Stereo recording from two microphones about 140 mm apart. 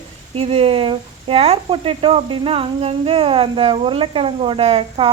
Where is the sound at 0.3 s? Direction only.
45° right (ahead or behind).